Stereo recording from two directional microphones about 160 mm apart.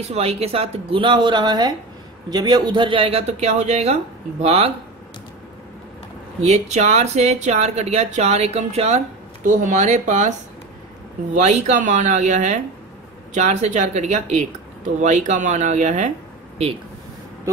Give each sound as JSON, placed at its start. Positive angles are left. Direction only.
{"t": 0.0, "sound": "speech", "side_deg": -40}
{"t": 6.4, "sound": "speech", "side_deg": -45}
{"t": 11.3, "sound": "speech", "side_deg": -45}